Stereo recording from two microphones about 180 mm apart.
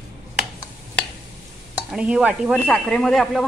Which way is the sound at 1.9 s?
5° right (ahead or behind).